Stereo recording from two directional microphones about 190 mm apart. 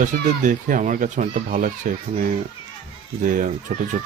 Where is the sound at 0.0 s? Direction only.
45° right (ahead or behind).